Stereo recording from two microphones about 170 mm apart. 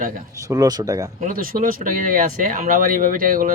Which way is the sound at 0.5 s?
20° right (ahead or behind).